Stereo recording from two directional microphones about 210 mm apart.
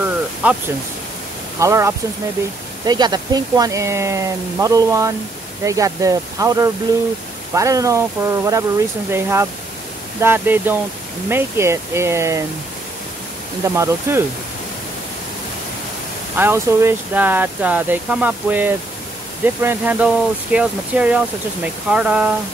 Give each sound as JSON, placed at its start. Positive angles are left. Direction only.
{"t": 0.0, "sound": "a sound", "side_deg": -5}
{"t": 1.6, "sound": "speech", "side_deg": -15}
{"t": 13.7, "sound": "speech", "side_deg": -15}
{"t": 16.3, "sound": "speech", "side_deg": -10}